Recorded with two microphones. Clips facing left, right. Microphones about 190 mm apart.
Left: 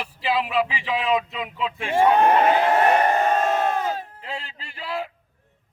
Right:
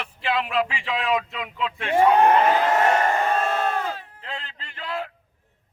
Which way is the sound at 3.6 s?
20° left (ahead or behind).